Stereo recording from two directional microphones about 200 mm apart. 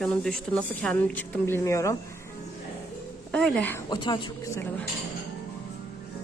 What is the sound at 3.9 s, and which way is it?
Speech, 20° left (ahead or behind).